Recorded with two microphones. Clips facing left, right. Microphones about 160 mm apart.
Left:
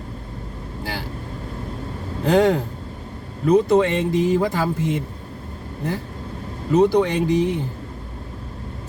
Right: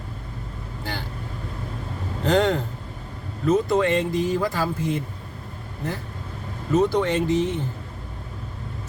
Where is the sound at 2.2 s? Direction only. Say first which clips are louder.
Left 3 dB; 10° left (ahead or behind).